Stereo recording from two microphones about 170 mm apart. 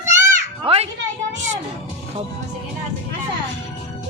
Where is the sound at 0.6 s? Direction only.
35° right (ahead or behind).